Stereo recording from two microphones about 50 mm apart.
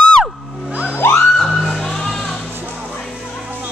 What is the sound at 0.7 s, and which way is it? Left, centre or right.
Music, right.